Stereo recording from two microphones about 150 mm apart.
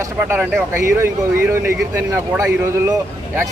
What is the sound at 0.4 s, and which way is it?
Speech, 15° right (ahead or behind).